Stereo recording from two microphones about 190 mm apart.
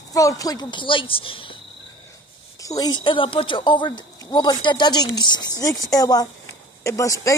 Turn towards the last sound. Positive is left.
turn(degrees=15)  # may be behind; listen again after turning